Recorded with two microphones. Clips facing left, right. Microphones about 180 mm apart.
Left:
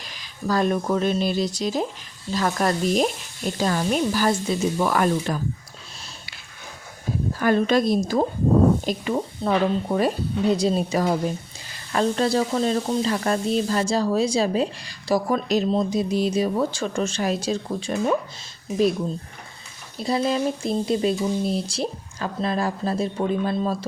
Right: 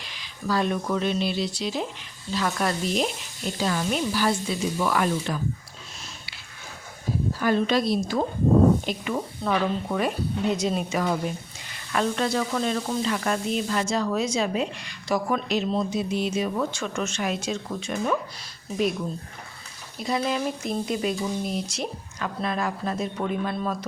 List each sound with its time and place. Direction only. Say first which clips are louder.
0.0 s speech: left 3 dB; 45° left (ahead or behind)
7.3 s speech: left 4 dB; 50° left (ahead or behind)
8.9 s speech: left 4 dB; 30° left (ahead or behind)
20.0 s speech: left 4 dB; 30° left (ahead or behind)